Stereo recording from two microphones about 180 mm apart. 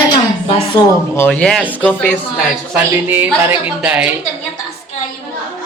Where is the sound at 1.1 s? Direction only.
10° left (ahead or behind).